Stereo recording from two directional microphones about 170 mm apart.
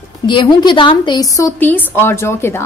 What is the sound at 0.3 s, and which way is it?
A woman's voice, 25° left (ahead or behind).